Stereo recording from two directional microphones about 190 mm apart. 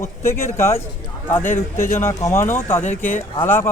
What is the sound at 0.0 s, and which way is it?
Speech, 15° left (ahead or behind).